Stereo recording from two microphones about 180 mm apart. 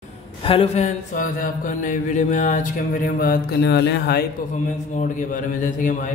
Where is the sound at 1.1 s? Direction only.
45° left (ahead or behind); by 4.2 s 65° left (ahead or behind).